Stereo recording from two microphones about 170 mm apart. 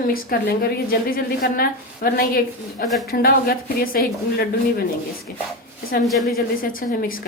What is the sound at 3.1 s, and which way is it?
Speech, 65° left (ahead or behind).